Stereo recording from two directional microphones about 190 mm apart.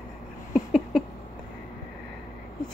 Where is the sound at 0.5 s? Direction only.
Centre (ahead or behind).